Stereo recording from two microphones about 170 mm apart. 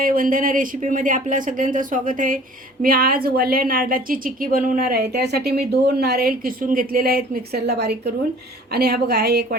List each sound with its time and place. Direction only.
0.0 s a woman's voice: 55° right (ahead or behind)